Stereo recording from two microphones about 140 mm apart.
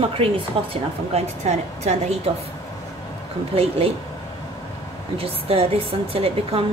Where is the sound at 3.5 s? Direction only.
45° right (ahead or behind).